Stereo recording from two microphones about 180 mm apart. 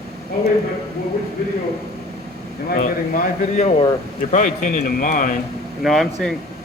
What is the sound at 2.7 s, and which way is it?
Speech, 50° left (ahead or behind).